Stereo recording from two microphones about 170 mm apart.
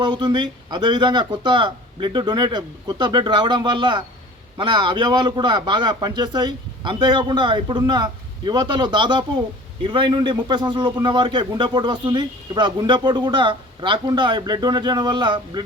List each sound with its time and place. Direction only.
0.0 s a man's voice: 25° right (ahead or behind)